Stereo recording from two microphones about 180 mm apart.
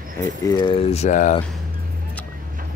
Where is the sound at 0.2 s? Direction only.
20° left (ahead or behind); by 1.3 s 45° left (ahead or behind).